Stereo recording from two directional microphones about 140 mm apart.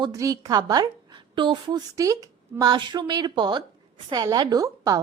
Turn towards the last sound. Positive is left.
turn(degrees=-25)  # may be behind; listen again after turning